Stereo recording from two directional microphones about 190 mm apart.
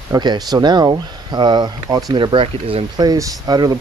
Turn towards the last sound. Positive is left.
turn(degrees=-20)  # may be behind; listen again after turning